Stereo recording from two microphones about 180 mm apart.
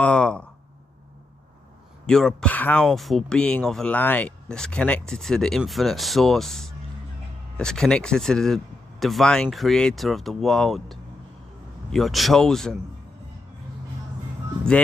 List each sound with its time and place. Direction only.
0.0 s a sound: 5° left (ahead or behind)
2.0 s speech: 5° left (ahead or behind)
14.7 s speech: 5° left (ahead or behind)